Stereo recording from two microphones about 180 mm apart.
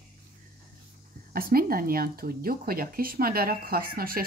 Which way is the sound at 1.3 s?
55° right (ahead or behind).